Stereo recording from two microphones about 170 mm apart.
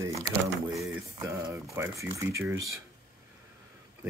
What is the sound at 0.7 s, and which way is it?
Speech, 15° right (ahead or behind).